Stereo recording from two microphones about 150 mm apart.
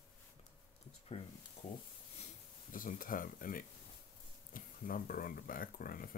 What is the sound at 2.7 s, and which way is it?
Speech, 65° left (ahead or behind).